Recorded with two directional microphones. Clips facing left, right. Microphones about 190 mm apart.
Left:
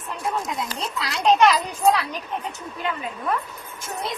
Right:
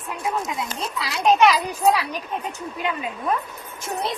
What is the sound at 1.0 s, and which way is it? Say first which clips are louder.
A child's voice: even; 5° right (ahead or behind).